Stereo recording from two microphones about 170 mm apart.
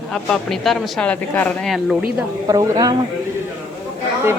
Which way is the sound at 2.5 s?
20° right (ahead or behind).